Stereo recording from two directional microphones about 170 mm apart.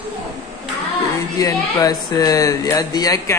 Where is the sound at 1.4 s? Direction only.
20° left (ahead or behind).